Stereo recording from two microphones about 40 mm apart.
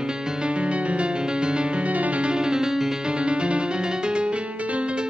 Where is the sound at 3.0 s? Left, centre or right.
Right.